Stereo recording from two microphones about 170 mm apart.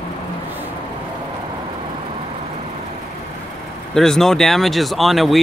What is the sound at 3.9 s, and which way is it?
Speech, 5° left (ahead or behind).